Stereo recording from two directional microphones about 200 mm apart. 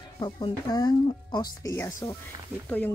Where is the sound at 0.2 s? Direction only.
20° left (ahead or behind).